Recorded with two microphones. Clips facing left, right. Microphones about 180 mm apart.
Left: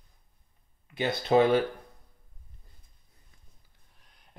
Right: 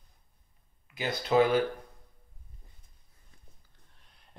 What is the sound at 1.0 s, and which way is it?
Speech, 30° left (ahead or behind).